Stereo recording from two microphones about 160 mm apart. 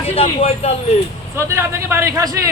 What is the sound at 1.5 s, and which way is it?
A man's voice, 15° right (ahead or behind).